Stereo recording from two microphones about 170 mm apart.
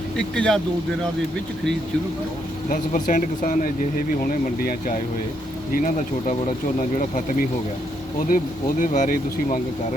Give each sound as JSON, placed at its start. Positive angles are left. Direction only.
{"t": 0.3, "sound": "speech", "side_deg": 5}
{"t": 2.6, "sound": "speech", "side_deg": 50}
{"t": 5.7, "sound": "speech", "side_deg": 45}
{"t": 8.3, "sound": "speech", "side_deg": 50}